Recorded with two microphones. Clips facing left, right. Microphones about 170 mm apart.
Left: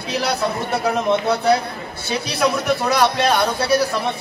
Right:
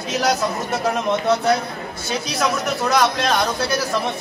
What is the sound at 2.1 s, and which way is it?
Speech, 60° left (ahead or behind).